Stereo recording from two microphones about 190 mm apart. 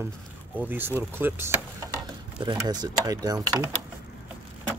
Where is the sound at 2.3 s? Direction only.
25° right (ahead or behind).